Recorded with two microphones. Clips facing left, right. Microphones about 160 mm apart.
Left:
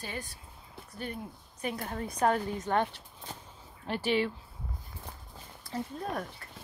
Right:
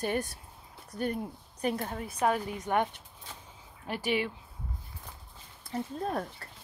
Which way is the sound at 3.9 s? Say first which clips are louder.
Left 2 dB; 10° right (ahead or behind).